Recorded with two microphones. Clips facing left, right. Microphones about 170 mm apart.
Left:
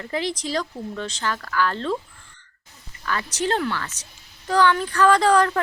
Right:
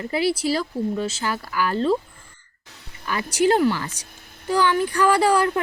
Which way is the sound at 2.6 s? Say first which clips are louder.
Right 3 dB; 75° right (ahead or behind).